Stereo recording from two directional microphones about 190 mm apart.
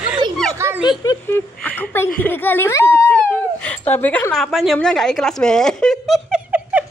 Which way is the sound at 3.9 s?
10° left (ahead or behind).